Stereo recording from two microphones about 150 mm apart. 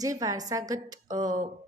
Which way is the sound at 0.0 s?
25° right (ahead or behind).